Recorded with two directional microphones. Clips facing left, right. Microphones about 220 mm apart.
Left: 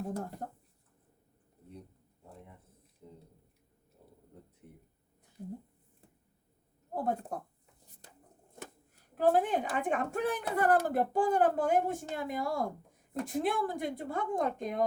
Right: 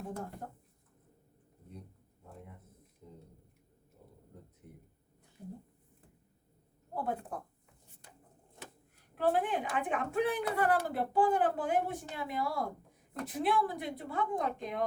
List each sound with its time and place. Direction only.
6.9 s speech: 40° left (ahead or behind)
9.1 s speech: 40° left (ahead or behind)